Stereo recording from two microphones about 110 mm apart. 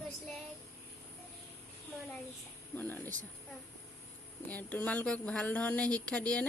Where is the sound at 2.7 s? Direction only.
15° left (ahead or behind).